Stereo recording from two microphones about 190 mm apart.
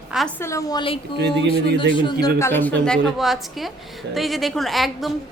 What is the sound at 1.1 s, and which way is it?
Speech, 60° right (ahead or behind).